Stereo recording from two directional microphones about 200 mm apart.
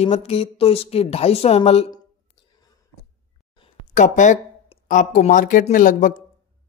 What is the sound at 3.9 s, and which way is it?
A man's voice, 40° left (ahead or behind).